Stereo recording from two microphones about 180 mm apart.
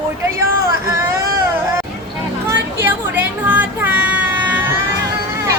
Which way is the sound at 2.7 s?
10° right (ahead or behind).